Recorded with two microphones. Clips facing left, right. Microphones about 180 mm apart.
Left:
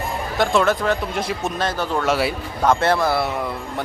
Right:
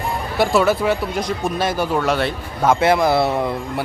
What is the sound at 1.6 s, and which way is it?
Speech, 10° right (ahead or behind).